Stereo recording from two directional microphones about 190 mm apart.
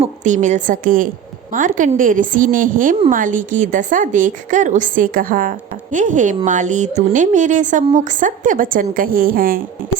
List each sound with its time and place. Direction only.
0.0 s a woman's voice: 40° right (ahead or behind)